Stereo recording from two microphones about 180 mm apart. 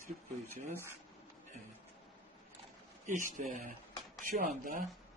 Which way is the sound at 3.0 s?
45° right (ahead or behind).